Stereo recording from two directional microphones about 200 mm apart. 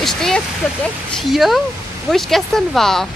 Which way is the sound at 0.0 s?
Centre (ahead or behind).